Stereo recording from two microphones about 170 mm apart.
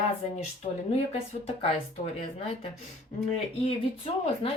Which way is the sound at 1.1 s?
35° left (ahead or behind).